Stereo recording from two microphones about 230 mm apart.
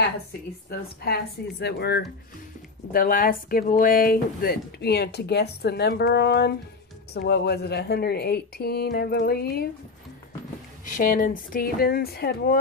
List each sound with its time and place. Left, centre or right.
0.7 s speech: left
10.9 s speech: left